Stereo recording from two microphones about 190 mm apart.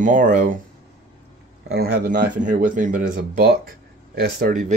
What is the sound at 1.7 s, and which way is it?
Speech, 55° right (ahead or behind).